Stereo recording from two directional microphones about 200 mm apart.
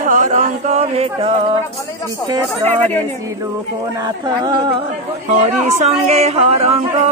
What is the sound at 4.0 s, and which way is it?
Music, 20° right (ahead or behind).